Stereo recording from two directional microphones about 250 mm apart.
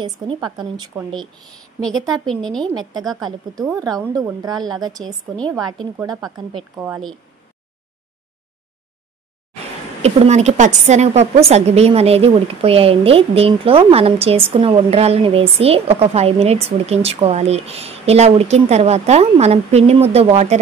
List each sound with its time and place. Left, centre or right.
0.0 s a woman's voice: centre
2.2 s a woman's voice: centre
3.1 s a woman's voice: centre
10.0 s speech: right